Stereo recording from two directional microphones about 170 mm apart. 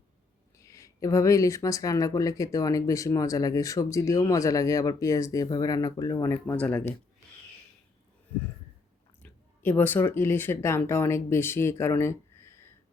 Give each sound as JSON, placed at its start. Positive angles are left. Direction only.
{"t": 0.6, "sound": "speech", "side_deg": 20}
{"t": 9.2, "sound": "speech", "side_deg": 10}